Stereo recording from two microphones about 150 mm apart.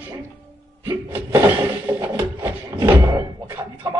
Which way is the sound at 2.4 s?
25° right (ahead or behind).